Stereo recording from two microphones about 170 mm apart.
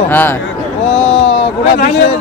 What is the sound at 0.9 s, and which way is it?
Speech, 40° left (ahead or behind).